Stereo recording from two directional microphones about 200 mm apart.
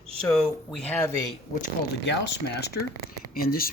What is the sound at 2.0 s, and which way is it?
Speech, 60° left (ahead or behind).